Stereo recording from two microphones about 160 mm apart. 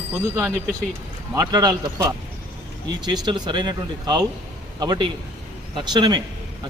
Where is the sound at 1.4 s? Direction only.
25° right (ahead or behind).